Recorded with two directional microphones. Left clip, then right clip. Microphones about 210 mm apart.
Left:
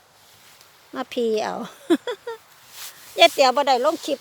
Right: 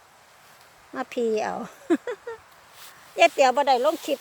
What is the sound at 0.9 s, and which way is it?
Speech, 20° left (ahead or behind).